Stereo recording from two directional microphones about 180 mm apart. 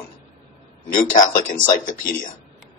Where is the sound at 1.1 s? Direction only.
45° left (ahead or behind).